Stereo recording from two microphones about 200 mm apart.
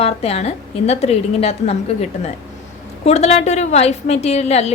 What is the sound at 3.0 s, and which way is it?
Speech, 30° left (ahead or behind).